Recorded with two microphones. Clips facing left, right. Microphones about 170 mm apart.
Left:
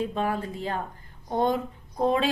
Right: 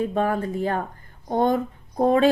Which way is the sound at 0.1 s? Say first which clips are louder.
Right 5 dB; 50° right (ahead or behind).